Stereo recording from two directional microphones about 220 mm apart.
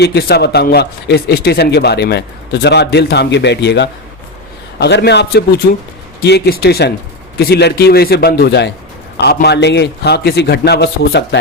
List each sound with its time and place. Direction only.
0.0 s speech: 45° left (ahead or behind)